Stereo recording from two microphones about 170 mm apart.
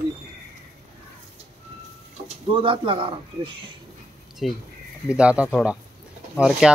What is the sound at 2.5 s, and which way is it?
A man's voice, 30° right (ahead or behind).